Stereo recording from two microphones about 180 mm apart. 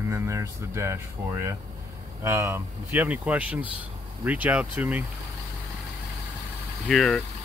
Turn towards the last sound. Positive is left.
turn(degrees=0)  # may be behind; listen again after turning